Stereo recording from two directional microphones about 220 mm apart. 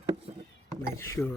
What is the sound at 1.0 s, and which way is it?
Speech, 10° left (ahead or behind).